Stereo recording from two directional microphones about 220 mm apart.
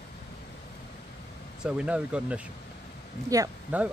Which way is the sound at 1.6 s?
5° right (ahead or behind).